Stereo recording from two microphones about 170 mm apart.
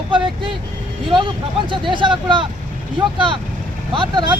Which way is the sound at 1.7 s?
30° right (ahead or behind).